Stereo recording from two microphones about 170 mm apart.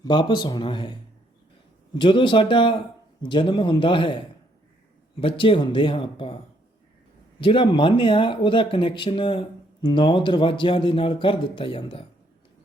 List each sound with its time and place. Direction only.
0.0 s speech: 25° left (ahead or behind)
2.0 s speech: 30° left (ahead or behind)
5.2 s speech: 30° left (ahead or behind)
7.4 s speech: 30° left (ahead or behind)